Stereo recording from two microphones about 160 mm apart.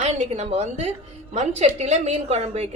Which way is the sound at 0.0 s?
45° right (ahead or behind).